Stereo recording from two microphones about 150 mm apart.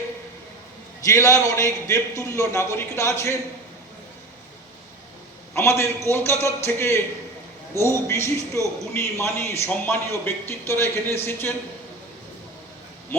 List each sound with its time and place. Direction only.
1.0 s a man's voice: 20° left (ahead or behind)
5.5 s a man's voice: 15° left (ahead or behind)